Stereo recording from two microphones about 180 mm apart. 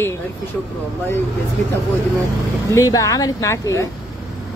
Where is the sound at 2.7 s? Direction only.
20° left (ahead or behind).